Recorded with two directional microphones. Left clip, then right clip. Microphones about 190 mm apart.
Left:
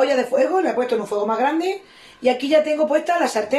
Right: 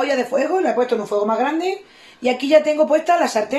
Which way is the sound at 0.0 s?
30° right (ahead or behind).